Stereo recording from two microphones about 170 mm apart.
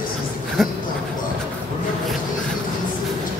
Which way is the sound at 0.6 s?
Centre (ahead or behind).